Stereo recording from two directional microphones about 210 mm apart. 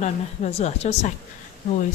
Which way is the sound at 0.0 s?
30° left (ahead or behind).